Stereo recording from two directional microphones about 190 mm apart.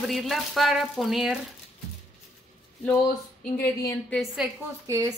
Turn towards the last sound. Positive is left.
turn(degrees=-20)  # may be behind; listen again after turning